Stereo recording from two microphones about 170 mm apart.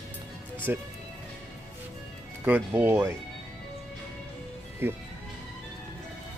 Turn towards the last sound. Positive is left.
turn(degrees=-15)  # may be behind; listen again after turning